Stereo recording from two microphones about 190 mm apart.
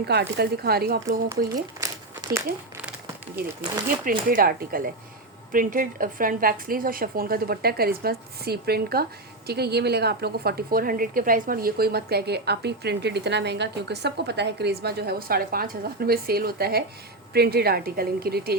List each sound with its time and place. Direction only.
0.0 s a woman's voice: 60° right (ahead or behind)
1.3 s a sound: 15° right (ahead or behind)
4.3 s a woman's voice: 50° right (ahead or behind)